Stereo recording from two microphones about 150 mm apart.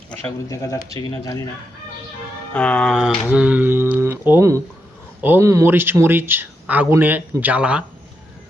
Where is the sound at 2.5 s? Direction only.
10° left (ahead or behind).